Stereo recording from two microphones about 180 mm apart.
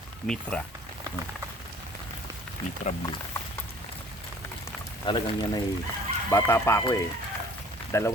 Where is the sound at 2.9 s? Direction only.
35° left (ahead or behind).